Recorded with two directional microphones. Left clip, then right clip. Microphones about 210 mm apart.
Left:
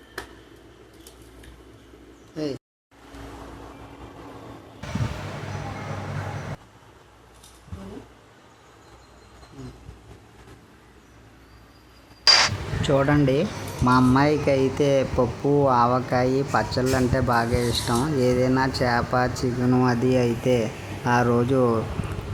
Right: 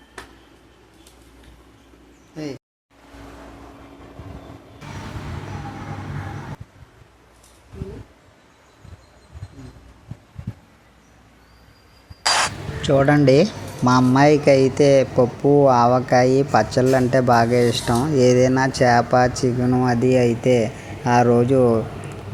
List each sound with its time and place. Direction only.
2.3 s speech: 15° right (ahead or behind)
12.8 s speech: 10° right (ahead or behind)